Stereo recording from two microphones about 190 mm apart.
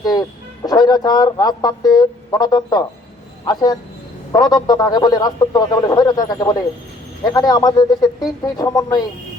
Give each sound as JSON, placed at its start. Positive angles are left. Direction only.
{"t": 0.0, "sound": "a man's voice", "side_deg": 20}